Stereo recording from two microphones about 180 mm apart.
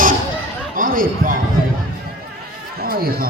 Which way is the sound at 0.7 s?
50° right (ahead or behind).